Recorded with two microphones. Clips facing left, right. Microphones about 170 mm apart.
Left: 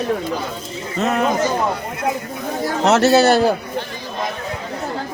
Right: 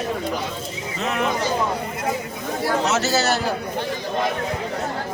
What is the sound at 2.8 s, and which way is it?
Speech, 60° left (ahead or behind).